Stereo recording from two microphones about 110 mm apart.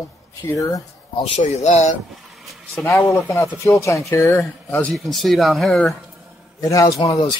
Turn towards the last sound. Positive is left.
turn(degrees=40)  # may be behind; listen again after turning